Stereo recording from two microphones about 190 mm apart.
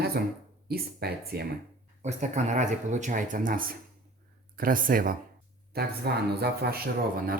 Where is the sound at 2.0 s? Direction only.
35° right (ahead or behind).